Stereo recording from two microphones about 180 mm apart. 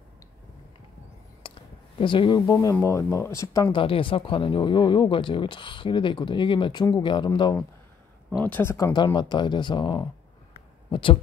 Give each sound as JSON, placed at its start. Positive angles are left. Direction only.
{"t": 1.4, "sound": "a sound", "side_deg": 30}
{"t": 2.0, "sound": "speech", "side_deg": 30}
{"t": 3.7, "sound": "speech", "side_deg": 30}
{"t": 8.3, "sound": "speech", "side_deg": 10}